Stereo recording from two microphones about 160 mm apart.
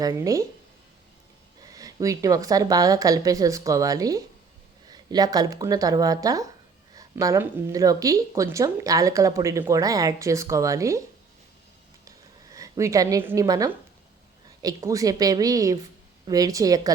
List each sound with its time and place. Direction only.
0.0 s speech: 20° right (ahead or behind)
1.7 s speech: 20° right (ahead or behind)
12.0 s a sound: 20° right (ahead or behind)
14.6 s speech: 20° right (ahead or behind)